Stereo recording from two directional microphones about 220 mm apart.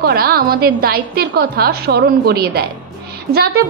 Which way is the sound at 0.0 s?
45° right (ahead or behind).